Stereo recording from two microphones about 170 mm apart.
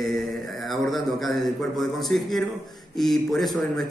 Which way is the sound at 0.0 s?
Centre (ahead or behind).